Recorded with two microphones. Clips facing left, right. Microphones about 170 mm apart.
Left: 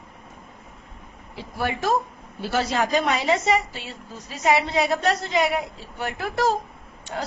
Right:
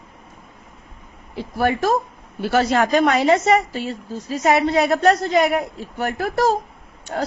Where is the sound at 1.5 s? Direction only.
50° right (ahead or behind).